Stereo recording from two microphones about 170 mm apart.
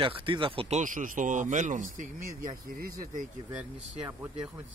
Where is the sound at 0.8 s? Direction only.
50° right (ahead or behind).